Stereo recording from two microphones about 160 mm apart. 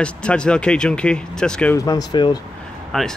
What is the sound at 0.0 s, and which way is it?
Speech, 5° left (ahead or behind).